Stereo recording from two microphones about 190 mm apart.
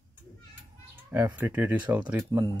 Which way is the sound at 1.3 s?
10° right (ahead or behind).